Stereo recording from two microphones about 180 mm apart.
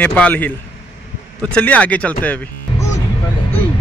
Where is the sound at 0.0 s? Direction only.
5° left (ahead or behind).